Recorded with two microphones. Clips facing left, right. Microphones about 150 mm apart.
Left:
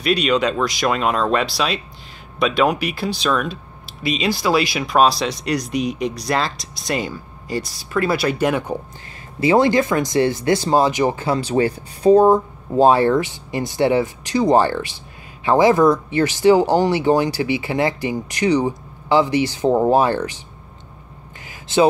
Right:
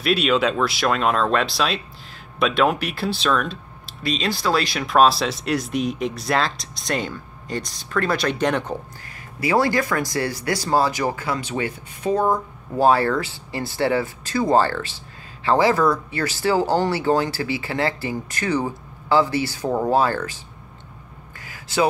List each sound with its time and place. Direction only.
0.0 s speech: centre (ahead or behind)
9.4 s speech: 20° left (ahead or behind)
12.7 s speech: 20° left (ahead or behind)
21.5 s a sound: 25° left (ahead or behind)